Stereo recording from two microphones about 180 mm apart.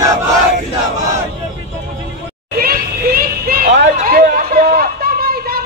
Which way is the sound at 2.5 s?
55° right (ahead or behind).